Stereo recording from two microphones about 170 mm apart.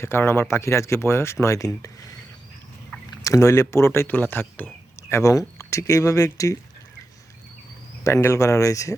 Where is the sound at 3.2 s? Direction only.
20° left (ahead or behind).